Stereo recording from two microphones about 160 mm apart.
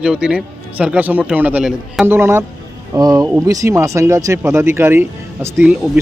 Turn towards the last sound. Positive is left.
turn(degrees=-5)  # may be behind; listen again after turning